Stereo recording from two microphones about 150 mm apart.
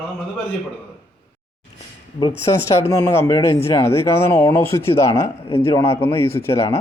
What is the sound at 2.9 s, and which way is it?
Speech, 15° left (ahead or behind).